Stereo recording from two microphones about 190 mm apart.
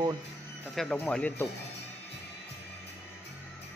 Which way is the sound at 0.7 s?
Centre (ahead or behind).